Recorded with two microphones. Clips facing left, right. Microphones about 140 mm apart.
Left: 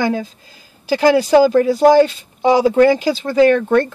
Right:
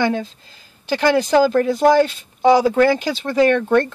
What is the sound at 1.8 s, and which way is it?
Speech, 30° left (ahead or behind).